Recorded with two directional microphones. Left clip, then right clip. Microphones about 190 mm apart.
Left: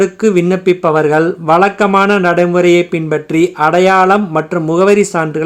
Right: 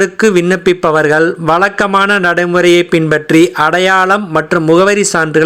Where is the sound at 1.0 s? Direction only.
15° right (ahead or behind).